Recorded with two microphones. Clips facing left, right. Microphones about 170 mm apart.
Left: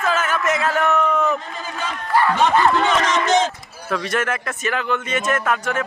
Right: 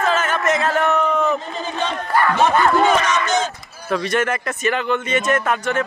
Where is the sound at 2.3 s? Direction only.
15° right (ahead or behind).